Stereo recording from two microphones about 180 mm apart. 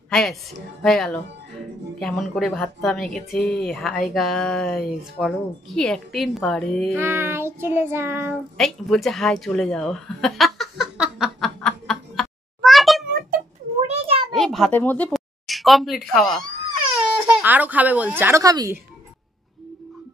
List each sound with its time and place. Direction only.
0.1 s a woman's voice: centre (ahead or behind)
7.0 s child singing: 15° right (ahead or behind)
8.5 s a sound: centre (ahead or behind)
13.8 s a sound: 30° right (ahead or behind)
14.3 s a woman's voice: centre (ahead or behind)
17.4 s child singing: 10° right (ahead or behind)